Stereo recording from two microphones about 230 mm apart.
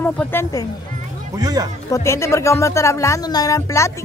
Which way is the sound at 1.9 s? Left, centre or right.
Centre.